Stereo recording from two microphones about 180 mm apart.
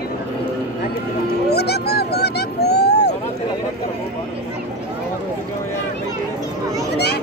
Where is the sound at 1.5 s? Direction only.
65° left (ahead or behind).